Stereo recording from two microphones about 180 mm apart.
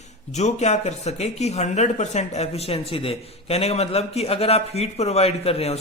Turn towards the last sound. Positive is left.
turn(degrees=35)  # may be behind; listen again after turning